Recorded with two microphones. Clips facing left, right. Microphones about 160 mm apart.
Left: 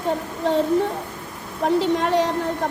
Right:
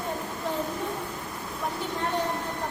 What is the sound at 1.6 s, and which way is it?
Speech, 85° left.